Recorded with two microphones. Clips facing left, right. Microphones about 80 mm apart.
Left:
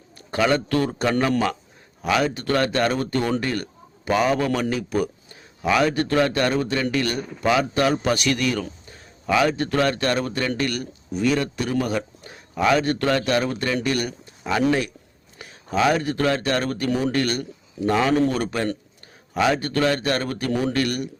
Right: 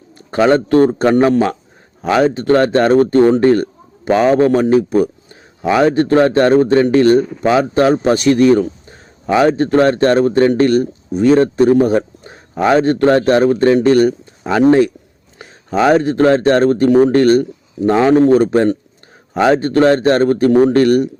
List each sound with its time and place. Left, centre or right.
0.3 s speech: right